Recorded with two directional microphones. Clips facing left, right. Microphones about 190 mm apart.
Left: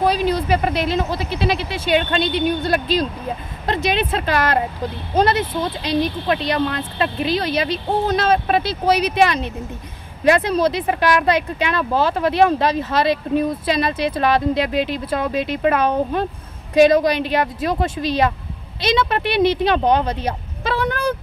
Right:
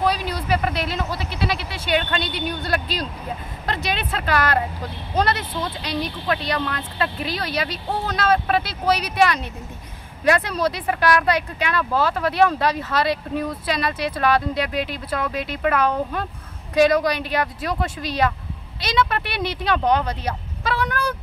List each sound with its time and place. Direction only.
0.0 s speech: 25° left (ahead or behind)